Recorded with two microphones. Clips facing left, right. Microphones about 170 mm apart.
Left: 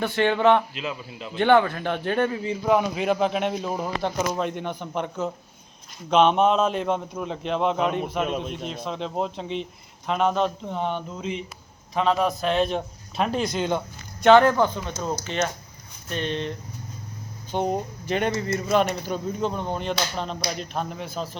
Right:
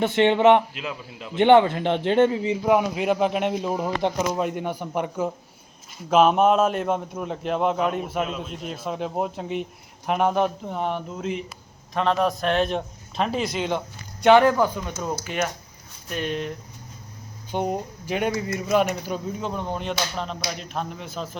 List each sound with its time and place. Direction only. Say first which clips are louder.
0.0 s a man's voice: right 3 dB; 20° right (ahead or behind)
0.7 s speech: left 1 dB; 5° right (ahead or behind)
1.4 s a man's voice: right 3 dB; 20° right (ahead or behind)
10.7 s a man's voice: right 1 dB; 5° right (ahead or behind)
14.2 s speech: even; 15° right (ahead or behind)
17.5 s a man's voice: left 1 dB; 10° right (ahead or behind)